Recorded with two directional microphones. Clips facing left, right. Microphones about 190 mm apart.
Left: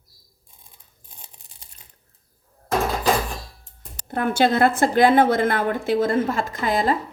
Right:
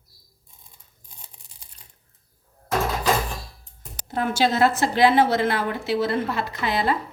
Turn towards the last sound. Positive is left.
turn(degrees=45)  # may be behind; listen again after turning